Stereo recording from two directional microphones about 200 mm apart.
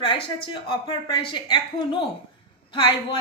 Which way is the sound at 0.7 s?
25° left (ahead or behind).